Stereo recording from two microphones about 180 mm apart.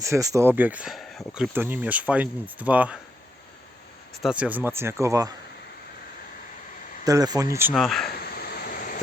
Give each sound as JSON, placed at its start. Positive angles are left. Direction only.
{"t": 0.0, "sound": "speech", "side_deg": -15}
{"t": 4.2, "sound": "speech", "side_deg": -5}
{"t": 7.0, "sound": "speech", "side_deg": -20}
{"t": 7.7, "sound": "speech", "side_deg": 0}
{"t": 8.4, "sound": "a sound", "side_deg": 55}